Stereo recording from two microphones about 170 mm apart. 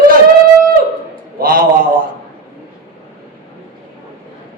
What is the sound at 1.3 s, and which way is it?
Speech, 60° right (ahead or behind).